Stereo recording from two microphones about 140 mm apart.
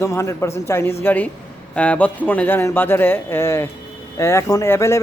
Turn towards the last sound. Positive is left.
turn(degrees=20)  # may be behind; listen again after turning